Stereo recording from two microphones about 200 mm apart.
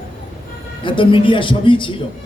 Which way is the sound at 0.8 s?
25° left (ahead or behind).